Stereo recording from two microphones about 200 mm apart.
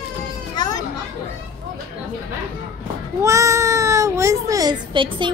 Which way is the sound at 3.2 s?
15° right (ahead or behind).